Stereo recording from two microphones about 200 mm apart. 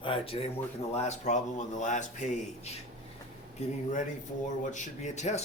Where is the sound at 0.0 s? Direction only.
25° left (ahead or behind).